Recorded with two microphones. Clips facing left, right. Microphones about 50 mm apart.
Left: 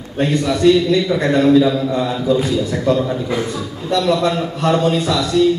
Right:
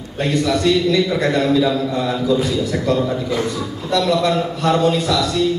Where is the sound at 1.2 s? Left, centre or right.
Left.